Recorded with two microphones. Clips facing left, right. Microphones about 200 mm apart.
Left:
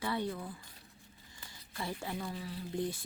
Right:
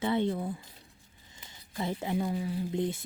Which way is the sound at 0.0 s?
25° right (ahead or behind).